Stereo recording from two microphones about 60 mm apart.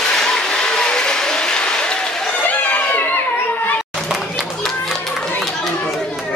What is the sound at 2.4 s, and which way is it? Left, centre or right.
Crowd, left.